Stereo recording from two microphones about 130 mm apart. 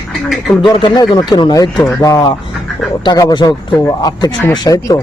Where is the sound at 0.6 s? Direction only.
35° left (ahead or behind).